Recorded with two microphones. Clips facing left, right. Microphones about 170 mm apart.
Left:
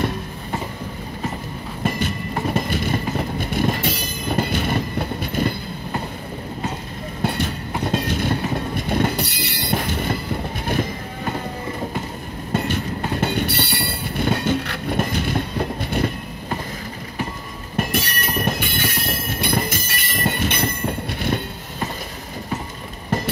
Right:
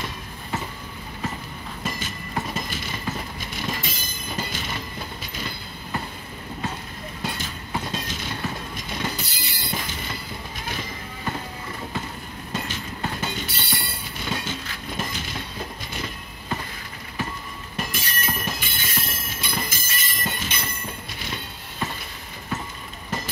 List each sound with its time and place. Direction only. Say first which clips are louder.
1.8 s vehicle: left 9 dB; 60° left (ahead or behind)
7.2 s train: left 9 dB; 60° left (ahead or behind)
12.5 s train: left 9 dB; 55° left (ahead or behind)
17.7 s train: left 8 dB; 60° left (ahead or behind)
23.0 s vehicle: left 8 dB; 55° left (ahead or behind)